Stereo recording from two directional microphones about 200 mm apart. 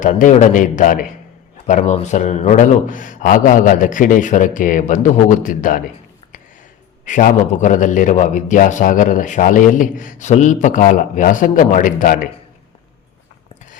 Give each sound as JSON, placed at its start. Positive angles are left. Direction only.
{"t": 0.0, "sound": "a man's voice", "side_deg": 40}
{"t": 7.0, "sound": "a man's voice", "side_deg": 40}